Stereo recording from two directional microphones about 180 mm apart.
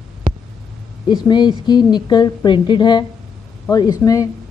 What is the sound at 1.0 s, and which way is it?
A woman's voice, 25° left (ahead or behind).